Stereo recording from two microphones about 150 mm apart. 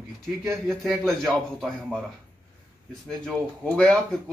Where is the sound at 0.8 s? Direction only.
Centre (ahead or behind).